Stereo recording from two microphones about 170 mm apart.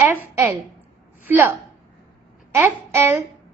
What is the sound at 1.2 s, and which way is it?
Speech, 10° right (ahead or behind).